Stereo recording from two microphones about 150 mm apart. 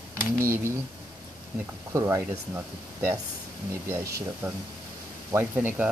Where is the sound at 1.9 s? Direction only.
20° right (ahead or behind).